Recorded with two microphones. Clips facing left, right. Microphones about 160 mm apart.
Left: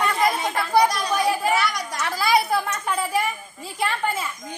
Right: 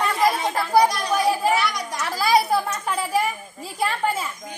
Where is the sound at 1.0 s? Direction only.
5° right (ahead or behind).